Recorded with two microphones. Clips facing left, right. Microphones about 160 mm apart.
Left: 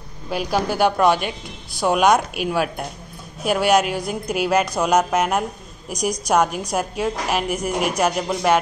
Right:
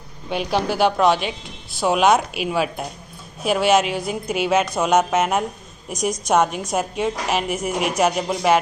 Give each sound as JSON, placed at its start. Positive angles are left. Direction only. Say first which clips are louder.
{"t": 0.3, "sound": "a woman's voice", "louder": "even", "side_deg": 5}